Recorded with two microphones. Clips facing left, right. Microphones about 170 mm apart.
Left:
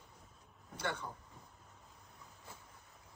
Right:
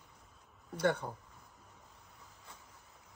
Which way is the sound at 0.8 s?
55° right (ahead or behind).